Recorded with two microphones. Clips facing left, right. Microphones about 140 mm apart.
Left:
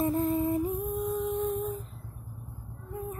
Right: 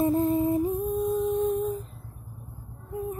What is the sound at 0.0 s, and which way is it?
Humming, 25° right (ahead or behind).